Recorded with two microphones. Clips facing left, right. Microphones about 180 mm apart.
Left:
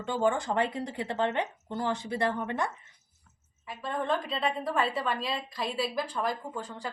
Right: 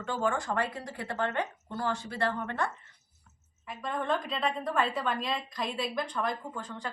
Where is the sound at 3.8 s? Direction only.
Centre (ahead or behind).